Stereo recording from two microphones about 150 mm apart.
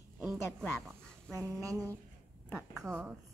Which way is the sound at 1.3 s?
20° right (ahead or behind).